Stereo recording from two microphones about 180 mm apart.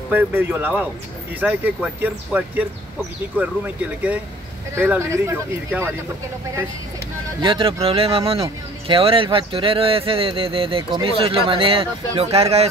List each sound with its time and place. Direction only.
0.1 s speech: 10° right (ahead or behind)
7.4 s speech: 30° right (ahead or behind)